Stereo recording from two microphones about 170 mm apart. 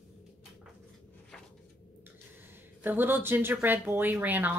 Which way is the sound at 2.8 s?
10° right (ahead or behind).